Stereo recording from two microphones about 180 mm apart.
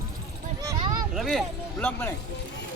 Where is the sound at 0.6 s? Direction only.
20° right (ahead or behind).